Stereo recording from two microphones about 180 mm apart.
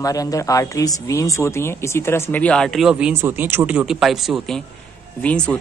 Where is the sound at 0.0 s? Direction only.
20° left (ahead or behind).